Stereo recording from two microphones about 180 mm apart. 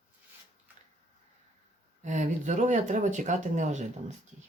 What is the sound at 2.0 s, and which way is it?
Speech, 40° right (ahead or behind).